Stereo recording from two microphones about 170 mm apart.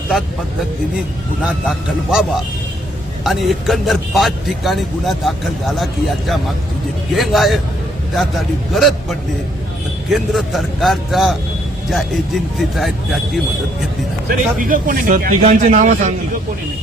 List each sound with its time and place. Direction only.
1.5 s a man's voice: 5° right (ahead or behind)
3.2 s a man's voice: centre (ahead or behind)
8.7 s a man's voice: centre (ahead or behind)
14.3 s a man's voice: 55° right (ahead or behind)